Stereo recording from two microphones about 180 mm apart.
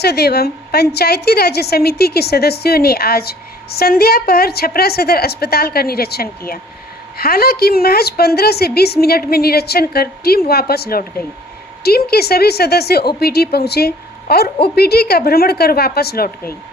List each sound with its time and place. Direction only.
0.0 s a woman's voice: 65° left (ahead or behind)